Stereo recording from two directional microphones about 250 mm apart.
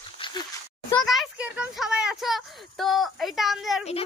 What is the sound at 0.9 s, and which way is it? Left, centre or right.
Speech, centre.